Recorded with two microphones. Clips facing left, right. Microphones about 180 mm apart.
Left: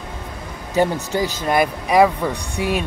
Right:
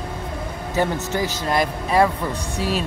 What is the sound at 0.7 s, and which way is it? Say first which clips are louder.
Speech: left 3 dB; 15° left (ahead or behind).